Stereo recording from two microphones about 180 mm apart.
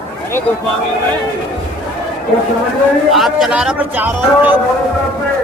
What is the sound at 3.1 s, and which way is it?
A man's voice, centre (ahead or behind).